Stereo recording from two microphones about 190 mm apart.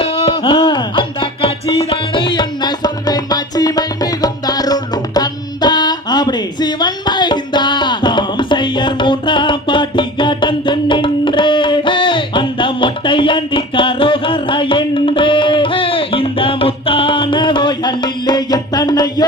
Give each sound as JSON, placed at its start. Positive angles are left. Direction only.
{"t": 0.0, "sound": "music", "side_deg": 30}